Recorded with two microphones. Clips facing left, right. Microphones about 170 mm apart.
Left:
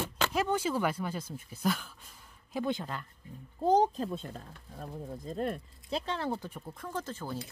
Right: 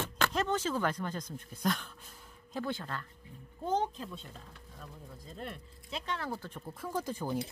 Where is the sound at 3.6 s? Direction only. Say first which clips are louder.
Left 7 dB; 35° left (ahead or behind).